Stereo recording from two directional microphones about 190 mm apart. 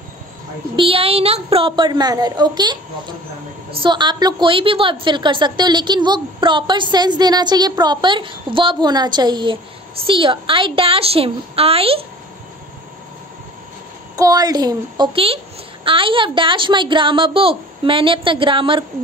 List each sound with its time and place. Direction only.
0.7 s a woman's voice: 30° right (ahead or behind)
14.1 s a woman's voice: 20° right (ahead or behind)